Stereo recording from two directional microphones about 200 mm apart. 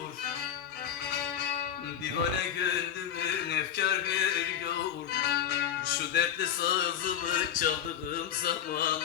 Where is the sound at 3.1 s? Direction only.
55° left (ahead or behind).